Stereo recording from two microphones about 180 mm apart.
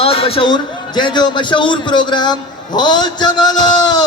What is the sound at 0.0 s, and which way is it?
A man's voice, 30° left (ahead or behind).